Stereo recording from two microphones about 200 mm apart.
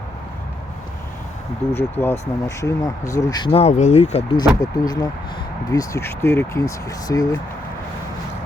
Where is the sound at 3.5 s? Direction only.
30° left (ahead or behind); by 7.4 s 15° left (ahead or behind).